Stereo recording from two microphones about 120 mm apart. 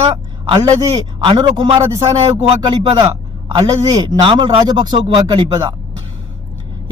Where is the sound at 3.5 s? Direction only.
35° right (ahead or behind).